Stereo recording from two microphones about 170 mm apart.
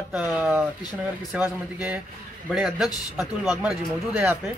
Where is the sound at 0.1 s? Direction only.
5° right (ahead or behind).